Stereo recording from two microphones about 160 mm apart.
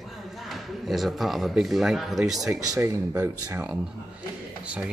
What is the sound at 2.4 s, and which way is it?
Speech, 20° right (ahead or behind).